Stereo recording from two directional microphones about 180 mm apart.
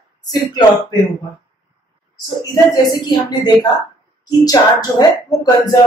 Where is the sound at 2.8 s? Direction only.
20° left (ahead or behind).